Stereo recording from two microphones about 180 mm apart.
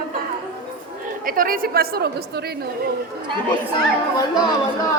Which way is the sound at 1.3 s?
50° right (ahead or behind).